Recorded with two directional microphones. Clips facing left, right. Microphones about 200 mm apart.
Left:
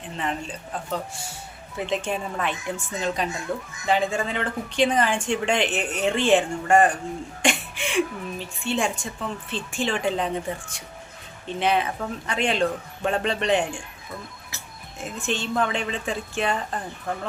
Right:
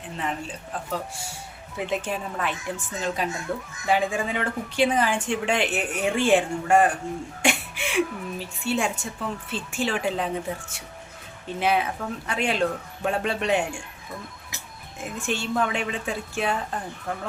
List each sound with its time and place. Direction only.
0.2 s a woman's voice: 5° right (ahead or behind)
14.5 s music: 15° right (ahead or behind)
15.2 s a woman's voice: 10° right (ahead or behind)